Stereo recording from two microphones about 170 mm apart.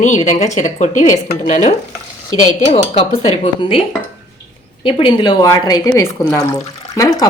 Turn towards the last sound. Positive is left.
turn(degrees=20)  # may be behind; listen again after turning